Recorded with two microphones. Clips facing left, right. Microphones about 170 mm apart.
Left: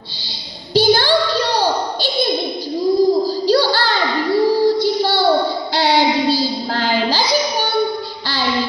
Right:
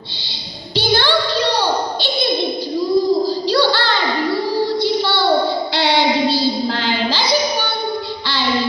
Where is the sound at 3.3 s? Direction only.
40° left (ahead or behind).